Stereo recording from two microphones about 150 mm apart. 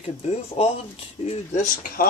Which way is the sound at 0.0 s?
40° left (ahead or behind).